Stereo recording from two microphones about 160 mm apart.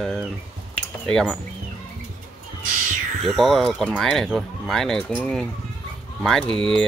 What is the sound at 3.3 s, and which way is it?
Speech, centre (ahead or behind).